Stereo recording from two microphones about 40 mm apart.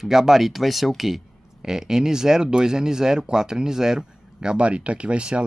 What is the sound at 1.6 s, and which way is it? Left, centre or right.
Speech, centre.